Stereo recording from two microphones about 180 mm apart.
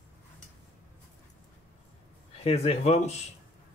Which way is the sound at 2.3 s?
35° left (ahead or behind).